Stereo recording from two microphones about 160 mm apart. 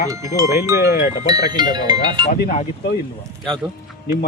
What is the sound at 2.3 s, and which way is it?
Speech, 65° left (ahead or behind).